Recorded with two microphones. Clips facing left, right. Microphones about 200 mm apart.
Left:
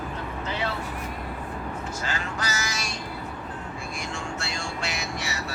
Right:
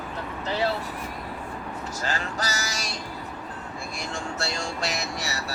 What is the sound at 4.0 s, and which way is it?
Vehicle, 35° right (ahead or behind).